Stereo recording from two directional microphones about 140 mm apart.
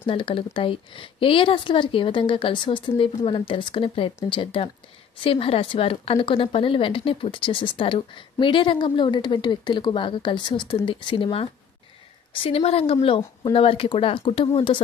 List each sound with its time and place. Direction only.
0.0 s a woman's voice: 40° left (ahead or behind)
12.4 s a woman's voice: 45° left (ahead or behind)